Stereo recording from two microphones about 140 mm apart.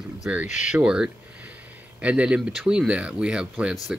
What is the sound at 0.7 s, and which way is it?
Speech, 5° right (ahead or behind).